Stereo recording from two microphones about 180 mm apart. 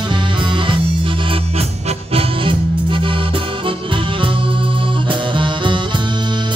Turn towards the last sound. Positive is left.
turn(degrees=-25)  # may be behind; listen again after turning